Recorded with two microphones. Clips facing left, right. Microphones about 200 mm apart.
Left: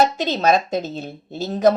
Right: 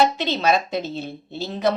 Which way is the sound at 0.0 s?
45° left (ahead or behind).